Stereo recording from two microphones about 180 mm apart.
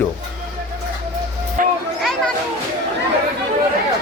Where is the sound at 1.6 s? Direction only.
50° right (ahead or behind).